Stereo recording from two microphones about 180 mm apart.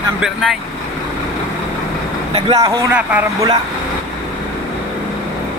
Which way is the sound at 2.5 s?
15° right (ahead or behind).